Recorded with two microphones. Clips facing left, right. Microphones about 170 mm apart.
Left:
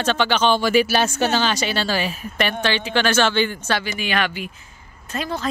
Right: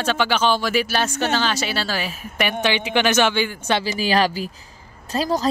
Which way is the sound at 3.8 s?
35° right (ahead or behind).